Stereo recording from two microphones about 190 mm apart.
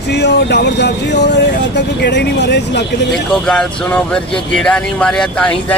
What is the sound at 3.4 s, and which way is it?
Speech, 5° left (ahead or behind).